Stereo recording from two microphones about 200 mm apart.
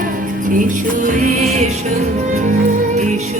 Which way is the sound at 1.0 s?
40° right (ahead or behind).